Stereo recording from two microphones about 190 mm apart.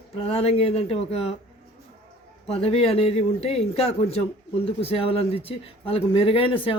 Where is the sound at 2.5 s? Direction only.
30° left (ahead or behind).